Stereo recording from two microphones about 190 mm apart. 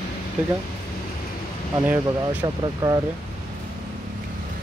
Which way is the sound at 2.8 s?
20° right (ahead or behind).